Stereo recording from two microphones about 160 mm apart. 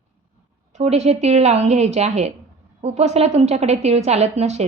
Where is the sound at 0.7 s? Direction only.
40° right (ahead or behind).